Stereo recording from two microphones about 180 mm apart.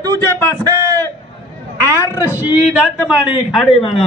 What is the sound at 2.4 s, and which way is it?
Speech, 5° right (ahead or behind).